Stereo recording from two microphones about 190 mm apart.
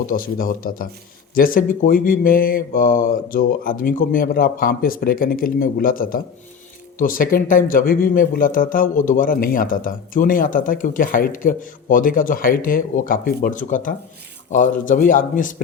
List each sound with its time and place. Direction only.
0.1 s a man's voice: 50° left (ahead or behind)